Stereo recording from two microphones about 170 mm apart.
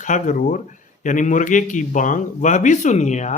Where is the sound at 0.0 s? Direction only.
50° left (ahead or behind).